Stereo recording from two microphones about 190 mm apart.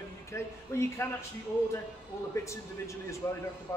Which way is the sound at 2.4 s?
15° left (ahead or behind).